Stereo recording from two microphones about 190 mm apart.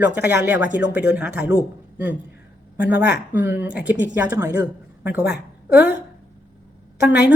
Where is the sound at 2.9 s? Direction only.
10° right (ahead or behind).